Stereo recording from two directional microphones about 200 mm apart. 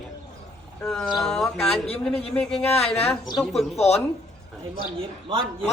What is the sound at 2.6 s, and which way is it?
Speech, 30° left (ahead or behind).